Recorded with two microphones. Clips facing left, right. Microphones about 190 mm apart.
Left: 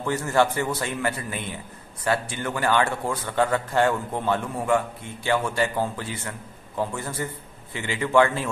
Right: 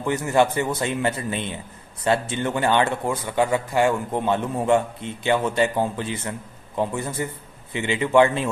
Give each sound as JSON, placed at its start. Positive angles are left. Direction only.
{"t": 0.0, "sound": "a man's voice", "side_deg": -15}